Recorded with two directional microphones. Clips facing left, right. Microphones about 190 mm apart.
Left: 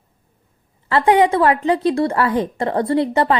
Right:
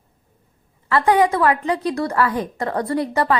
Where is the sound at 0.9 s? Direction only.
25° left (ahead or behind).